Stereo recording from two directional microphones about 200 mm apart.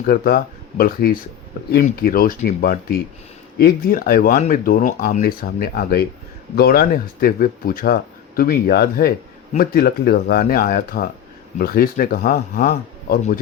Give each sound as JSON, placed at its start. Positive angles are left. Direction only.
{"t": 0.0, "sound": "speech", "side_deg": 45}